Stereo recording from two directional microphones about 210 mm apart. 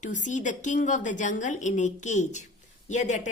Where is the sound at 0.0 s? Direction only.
35° left (ahead or behind).